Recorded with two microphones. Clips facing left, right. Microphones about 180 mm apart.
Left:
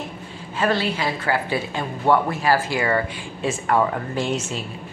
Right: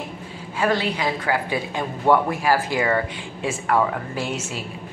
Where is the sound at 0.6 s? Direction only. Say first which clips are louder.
Even; 15° right (ahead or behind).